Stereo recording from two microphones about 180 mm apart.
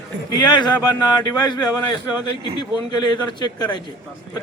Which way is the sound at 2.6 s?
25° left (ahead or behind).